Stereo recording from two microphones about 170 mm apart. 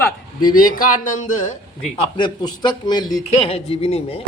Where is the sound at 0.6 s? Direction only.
55° left (ahead or behind).